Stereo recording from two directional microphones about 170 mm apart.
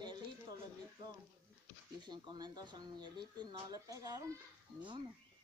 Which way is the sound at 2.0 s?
25° right (ahead or behind).